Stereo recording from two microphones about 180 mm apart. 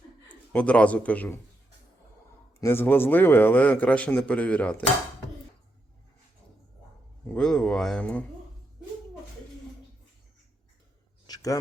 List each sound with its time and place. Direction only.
0.3 s a man's voice: 5° left (ahead or behind)
2.6 s a man's voice: 15° left (ahead or behind)
7.3 s speech: 5° left (ahead or behind)
11.3 s a sound: 20° left (ahead or behind)